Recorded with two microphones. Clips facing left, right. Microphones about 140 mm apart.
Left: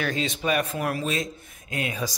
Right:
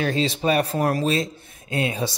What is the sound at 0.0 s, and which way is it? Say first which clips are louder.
Speech: right 5 dB; 30° right (ahead or behind).